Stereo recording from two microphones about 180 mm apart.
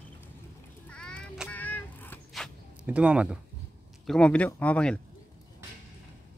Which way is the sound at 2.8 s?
5° right (ahead or behind).